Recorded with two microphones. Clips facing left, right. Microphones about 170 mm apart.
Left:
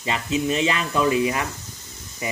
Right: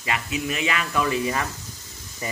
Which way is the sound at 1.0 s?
15° left (ahead or behind).